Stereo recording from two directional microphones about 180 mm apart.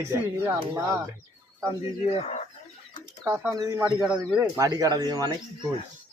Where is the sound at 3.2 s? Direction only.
15° right (ahead or behind).